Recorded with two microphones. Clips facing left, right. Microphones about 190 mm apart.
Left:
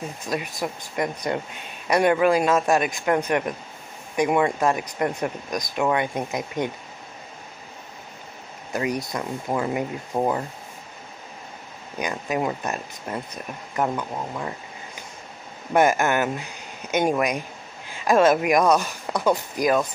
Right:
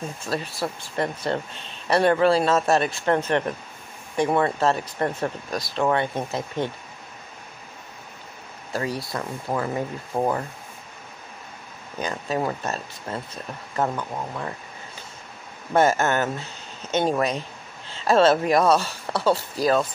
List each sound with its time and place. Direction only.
0.3 s speech: 15° left (ahead or behind)
8.7 s speech: 20° left (ahead or behind)
12.0 s speech: 15° left (ahead or behind)
15.7 s speech: 15° left (ahead or behind)